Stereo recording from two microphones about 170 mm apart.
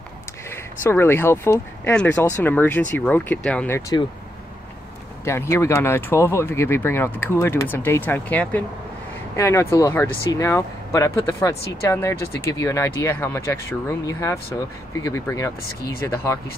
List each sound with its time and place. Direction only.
0.5 s speech: 15° left (ahead or behind)
5.2 s speech: 15° left (ahead or behind)